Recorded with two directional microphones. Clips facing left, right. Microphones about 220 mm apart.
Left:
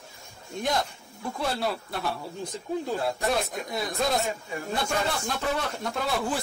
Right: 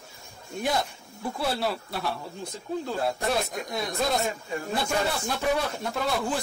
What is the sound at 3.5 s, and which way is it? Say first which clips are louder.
Speech: even; centre (ahead or behind).